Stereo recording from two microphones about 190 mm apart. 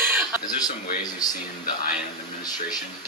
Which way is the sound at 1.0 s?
20° left (ahead or behind).